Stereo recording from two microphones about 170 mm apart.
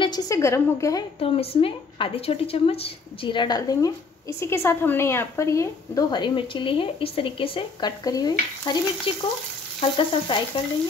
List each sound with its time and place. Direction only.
0.0 s a woman's voice: 25° left (ahead or behind)
1.2 s a woman's voice: 35° left (ahead or behind)